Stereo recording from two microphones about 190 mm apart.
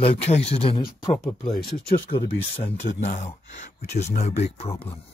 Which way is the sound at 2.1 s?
30° left (ahead or behind).